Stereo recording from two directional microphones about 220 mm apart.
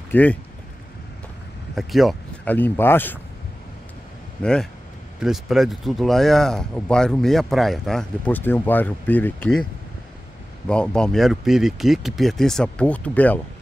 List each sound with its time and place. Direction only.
0.1 s speech: 5° left (ahead or behind)
1.8 s speech: centre (ahead or behind)
4.4 s speech: 5° left (ahead or behind)
10.7 s speech: 5° left (ahead or behind)